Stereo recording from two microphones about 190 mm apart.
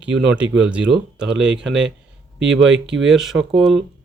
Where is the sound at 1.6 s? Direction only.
75° right (ahead or behind).